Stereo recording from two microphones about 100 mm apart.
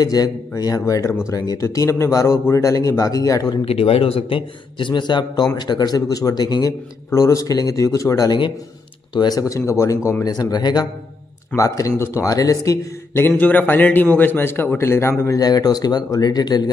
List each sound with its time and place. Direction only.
0.0 s speech: 40° left (ahead or behind)
3.6 s speech: 75° left (ahead or behind); by 6.7 s 45° left (ahead or behind)
7.1 s speech: 30° left (ahead or behind)
13.1 s a man's voice: 20° left (ahead or behind); by 16.7 s 45° left (ahead or behind)